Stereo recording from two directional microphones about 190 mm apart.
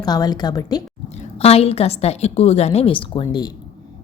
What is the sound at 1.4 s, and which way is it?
A woman's voice, 30° left (ahead or behind).